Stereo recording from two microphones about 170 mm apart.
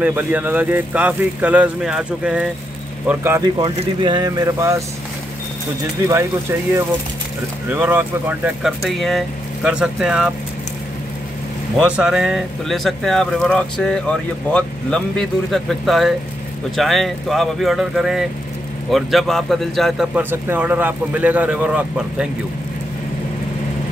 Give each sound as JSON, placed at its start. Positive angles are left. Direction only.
{"t": 0.0, "sound": "speech", "side_deg": -10}
{"t": 3.4, "sound": "speech", "side_deg": -25}
{"t": 7.7, "sound": "speech", "side_deg": -10}
{"t": 11.8, "sound": "speech", "side_deg": -5}
{"t": 20.2, "sound": "speech", "side_deg": -10}